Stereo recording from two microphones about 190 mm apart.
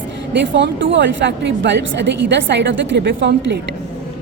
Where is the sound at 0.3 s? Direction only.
70° right (ahead or behind).